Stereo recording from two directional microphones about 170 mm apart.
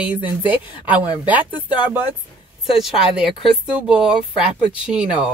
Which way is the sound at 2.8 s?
5° right (ahead or behind).